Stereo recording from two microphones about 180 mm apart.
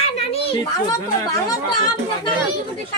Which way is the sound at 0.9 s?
20° left (ahead or behind).